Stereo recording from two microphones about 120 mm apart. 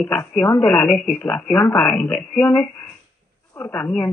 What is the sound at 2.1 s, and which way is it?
Speech, 5° left (ahead or behind).